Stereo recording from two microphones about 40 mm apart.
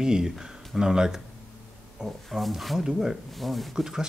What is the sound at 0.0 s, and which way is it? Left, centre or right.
Speech, centre.